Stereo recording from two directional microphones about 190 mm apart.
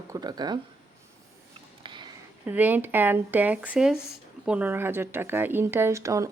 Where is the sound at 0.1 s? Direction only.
20° right (ahead or behind).